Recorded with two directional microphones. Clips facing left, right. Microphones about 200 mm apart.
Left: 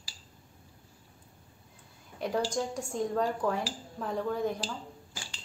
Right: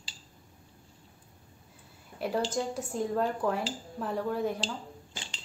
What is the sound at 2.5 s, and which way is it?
Speech, 5° right (ahead or behind).